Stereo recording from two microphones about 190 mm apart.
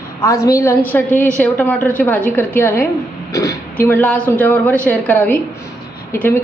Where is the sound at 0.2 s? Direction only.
15° left (ahead or behind).